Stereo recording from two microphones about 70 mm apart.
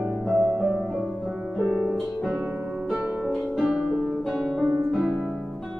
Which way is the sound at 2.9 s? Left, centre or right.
Centre.